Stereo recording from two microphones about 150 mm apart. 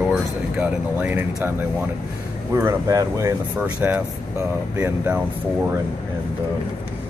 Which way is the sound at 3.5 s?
10° right (ahead or behind).